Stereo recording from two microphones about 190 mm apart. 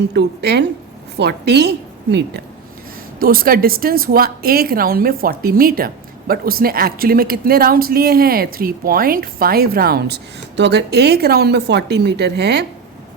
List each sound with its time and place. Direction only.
0.1 s speech: 60° right (ahead or behind)
3.2 s a woman's voice: 50° right (ahead or behind)